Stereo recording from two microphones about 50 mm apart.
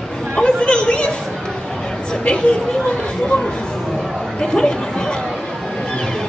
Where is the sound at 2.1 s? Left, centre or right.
Centre.